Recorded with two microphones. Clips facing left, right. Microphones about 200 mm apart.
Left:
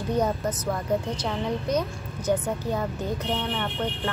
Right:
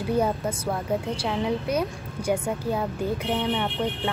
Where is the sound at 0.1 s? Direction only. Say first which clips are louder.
Right 1 dB; 10° right (ahead or behind).